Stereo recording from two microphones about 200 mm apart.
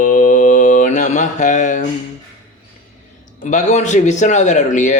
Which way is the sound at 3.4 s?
35° left (ahead or behind).